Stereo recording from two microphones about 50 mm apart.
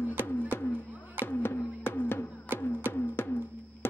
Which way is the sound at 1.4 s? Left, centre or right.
Left.